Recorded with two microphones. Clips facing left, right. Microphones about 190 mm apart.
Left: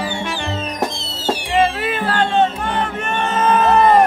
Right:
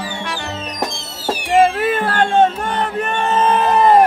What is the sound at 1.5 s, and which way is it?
Music, 50° right (ahead or behind).